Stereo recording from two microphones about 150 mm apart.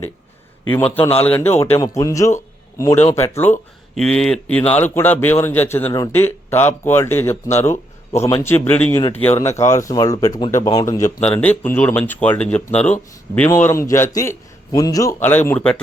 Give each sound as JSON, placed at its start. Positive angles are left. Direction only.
{"t": 0.7, "sound": "speech", "side_deg": 10}
{"t": 3.9, "sound": "speech", "side_deg": 5}
{"t": 11.2, "sound": "speech", "side_deg": 10}